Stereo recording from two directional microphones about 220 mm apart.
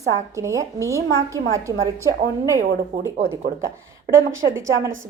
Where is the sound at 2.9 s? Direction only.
40° right (ahead or behind).